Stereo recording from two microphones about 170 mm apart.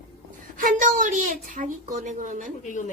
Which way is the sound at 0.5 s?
50° right (ahead or behind).